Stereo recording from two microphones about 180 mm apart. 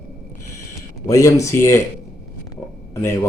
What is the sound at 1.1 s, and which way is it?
Speech, 15° left (ahead or behind).